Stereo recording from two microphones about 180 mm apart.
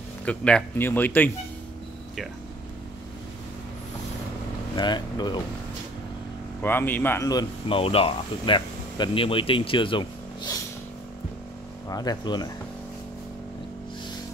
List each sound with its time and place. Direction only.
0.2 s speech: 5° left (ahead or behind)
4.7 s speech: 25° left (ahead or behind)
6.6 s speech: 10° left (ahead or behind)
7.8 s speech: 30° left (ahead or behind)
11.9 s speech: 20° left (ahead or behind)